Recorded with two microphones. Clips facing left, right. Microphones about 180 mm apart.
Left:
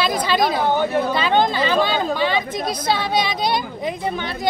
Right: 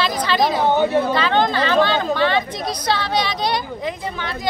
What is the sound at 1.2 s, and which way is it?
Speech, 10° left (ahead or behind).